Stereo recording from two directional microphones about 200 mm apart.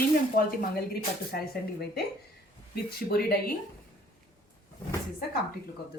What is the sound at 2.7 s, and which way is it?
Speech, 50° left (ahead or behind).